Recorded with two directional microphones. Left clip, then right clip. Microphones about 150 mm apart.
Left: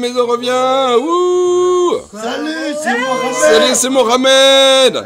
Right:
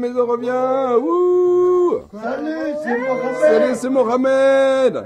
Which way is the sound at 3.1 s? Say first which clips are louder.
Left 3 dB; 20° left (ahead or behind).